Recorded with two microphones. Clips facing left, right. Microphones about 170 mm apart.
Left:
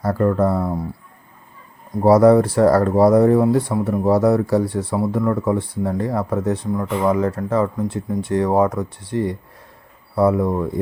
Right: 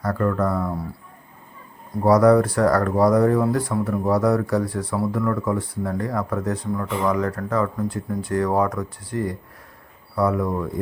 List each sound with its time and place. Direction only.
0.0 s speech: 25° left (ahead or behind)
2.0 s speech: 25° left (ahead or behind)